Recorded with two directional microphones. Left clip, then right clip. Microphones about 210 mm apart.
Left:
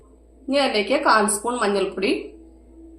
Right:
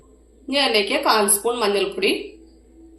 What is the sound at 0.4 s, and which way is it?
A woman's voice, 45° left (ahead or behind).